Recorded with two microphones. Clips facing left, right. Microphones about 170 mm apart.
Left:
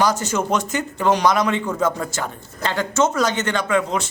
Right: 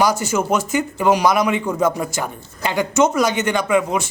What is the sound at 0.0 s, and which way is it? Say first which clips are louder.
Speech: right 2 dB; 10° right (ahead or behind).